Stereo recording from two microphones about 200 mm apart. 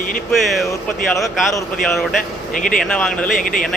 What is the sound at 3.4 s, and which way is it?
Speech, 45° left (ahead or behind).